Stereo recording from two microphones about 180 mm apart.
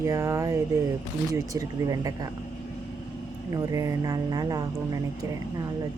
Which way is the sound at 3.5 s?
20° right (ahead or behind).